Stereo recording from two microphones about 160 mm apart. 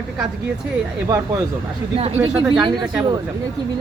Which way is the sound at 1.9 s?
40° right (ahead or behind).